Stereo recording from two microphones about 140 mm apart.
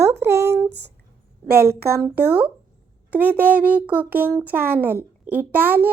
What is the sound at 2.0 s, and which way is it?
Speech, 10° right (ahead or behind).